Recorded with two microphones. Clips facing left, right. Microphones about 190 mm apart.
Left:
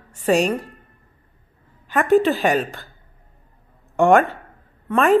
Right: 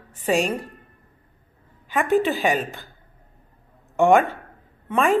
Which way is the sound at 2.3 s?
Centre (ahead or behind).